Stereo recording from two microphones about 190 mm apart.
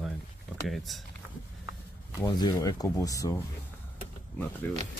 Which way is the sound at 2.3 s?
20° left (ahead or behind).